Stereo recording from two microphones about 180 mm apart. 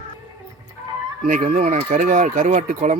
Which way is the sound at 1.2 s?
45° right (ahead or behind).